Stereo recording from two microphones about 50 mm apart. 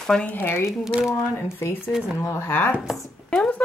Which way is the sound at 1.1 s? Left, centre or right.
Left.